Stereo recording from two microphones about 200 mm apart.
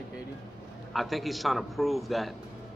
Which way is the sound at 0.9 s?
Centre (ahead or behind).